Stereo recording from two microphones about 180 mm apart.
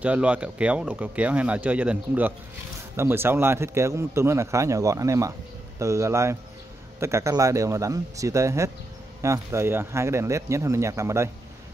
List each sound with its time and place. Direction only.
0.0 s speech: 5° right (ahead or behind)